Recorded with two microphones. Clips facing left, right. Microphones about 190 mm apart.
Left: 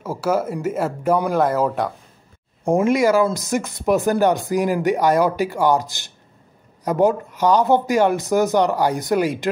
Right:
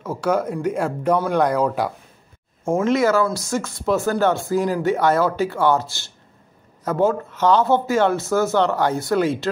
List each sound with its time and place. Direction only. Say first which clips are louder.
0.0 s speech: even; 5° left (ahead or behind)
2.6 s speech: left 2 dB; 15° left (ahead or behind)